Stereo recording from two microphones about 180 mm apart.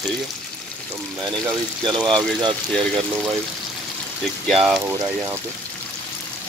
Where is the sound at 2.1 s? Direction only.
25° right (ahead or behind).